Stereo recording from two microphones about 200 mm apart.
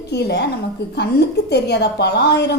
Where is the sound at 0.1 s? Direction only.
55° left (ahead or behind).